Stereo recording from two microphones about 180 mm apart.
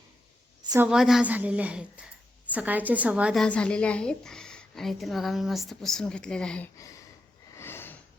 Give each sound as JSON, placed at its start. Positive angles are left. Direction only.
{"t": 0.9, "sound": "a woman's voice", "side_deg": -5}
{"t": 3.4, "sound": "a woman's voice", "side_deg": 5}
{"t": 6.7, "sound": "a sound", "side_deg": 20}